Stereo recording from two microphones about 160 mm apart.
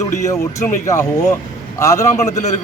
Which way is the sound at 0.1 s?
20° left (ahead or behind).